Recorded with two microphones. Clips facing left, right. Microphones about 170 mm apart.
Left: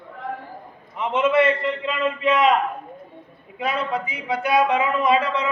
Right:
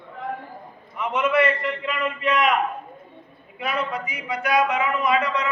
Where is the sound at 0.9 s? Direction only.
25° left (ahead or behind).